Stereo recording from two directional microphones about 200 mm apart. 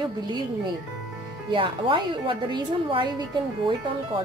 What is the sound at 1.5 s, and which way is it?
Speech, 25° right (ahead or behind).